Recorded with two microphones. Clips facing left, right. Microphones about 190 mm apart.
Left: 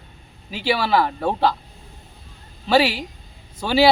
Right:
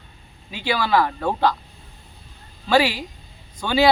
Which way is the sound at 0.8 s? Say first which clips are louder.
Right 2 dB; 5° left (ahead or behind).